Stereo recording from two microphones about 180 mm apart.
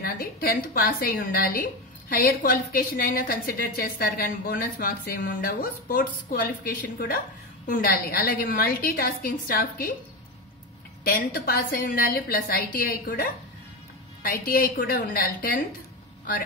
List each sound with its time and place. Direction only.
0.0 s a woman's voice: 55° left (ahead or behind)
11.1 s a woman's voice: 55° left (ahead or behind)